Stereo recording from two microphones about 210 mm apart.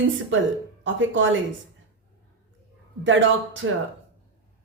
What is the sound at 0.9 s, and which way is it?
Speech, 65° right (ahead or behind).